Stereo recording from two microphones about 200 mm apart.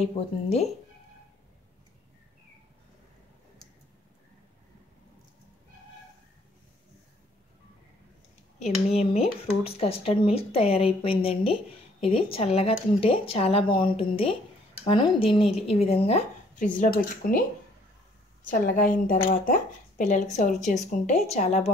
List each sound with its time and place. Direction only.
0.0 s speech: 30° left (ahead or behind)
8.5 s speech: 30° left (ahead or behind); by 17.5 s 45° left (ahead or behind)
18.5 s a woman's voice: 40° left (ahead or behind)